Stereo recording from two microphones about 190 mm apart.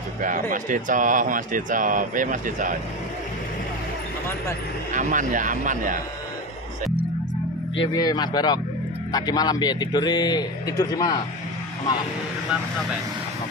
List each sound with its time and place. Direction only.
0.2 s speech: 45° right (ahead or behind)
4.9 s speech: 45° right (ahead or behind)
7.8 s a man's voice: 20° left (ahead or behind)